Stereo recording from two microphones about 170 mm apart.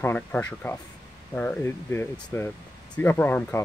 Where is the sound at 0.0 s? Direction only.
10° left (ahead or behind).